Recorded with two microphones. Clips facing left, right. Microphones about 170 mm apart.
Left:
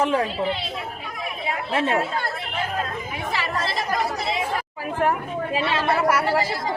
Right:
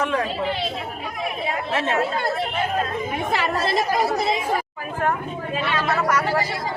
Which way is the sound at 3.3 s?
50° right (ahead or behind).